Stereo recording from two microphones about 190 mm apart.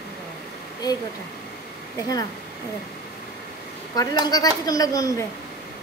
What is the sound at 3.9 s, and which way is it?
Speech, 20° left (ahead or behind).